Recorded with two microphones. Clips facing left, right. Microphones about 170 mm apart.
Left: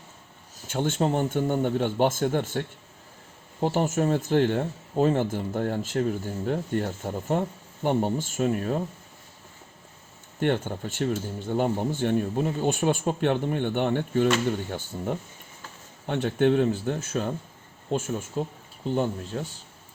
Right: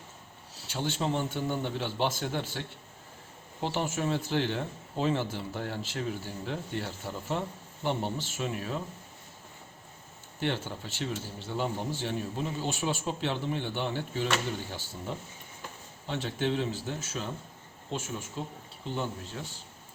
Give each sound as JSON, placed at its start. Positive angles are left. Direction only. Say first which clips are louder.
{"t": 0.7, "sound": "speech", "louder": "left 6 dB", "side_deg": 50}
{"t": 10.4, "sound": "speech", "louder": "left 7 dB", "side_deg": 50}
{"t": 19.3, "sound": "speech", "louder": "left 8 dB", "side_deg": 50}